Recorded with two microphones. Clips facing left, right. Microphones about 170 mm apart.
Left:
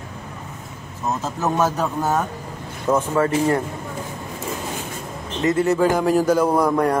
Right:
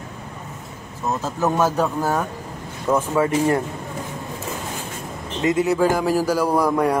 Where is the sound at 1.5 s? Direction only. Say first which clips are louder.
Even; 5° right (ahead or behind).